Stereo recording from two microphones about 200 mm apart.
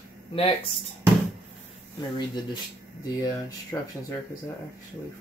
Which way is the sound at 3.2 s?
20° left (ahead or behind).